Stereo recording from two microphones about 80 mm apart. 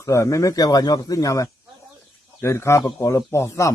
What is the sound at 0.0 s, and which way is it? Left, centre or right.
Speech, left.